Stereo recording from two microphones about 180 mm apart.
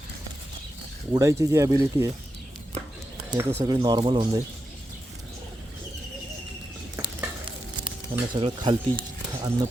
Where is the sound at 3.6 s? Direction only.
20° right (ahead or behind).